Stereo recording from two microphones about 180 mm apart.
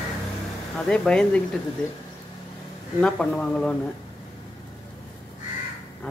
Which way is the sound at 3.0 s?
5° left (ahead or behind).